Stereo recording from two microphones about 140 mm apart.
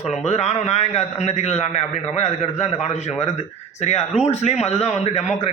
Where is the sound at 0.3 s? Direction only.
50° left (ahead or behind).